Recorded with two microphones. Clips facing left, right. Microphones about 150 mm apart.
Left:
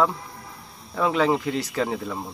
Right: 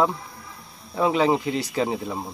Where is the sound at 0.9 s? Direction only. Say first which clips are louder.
Right 1 dB; 15° right (ahead or behind).